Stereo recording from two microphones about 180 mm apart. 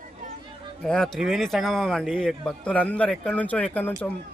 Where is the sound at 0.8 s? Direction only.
5° left (ahead or behind).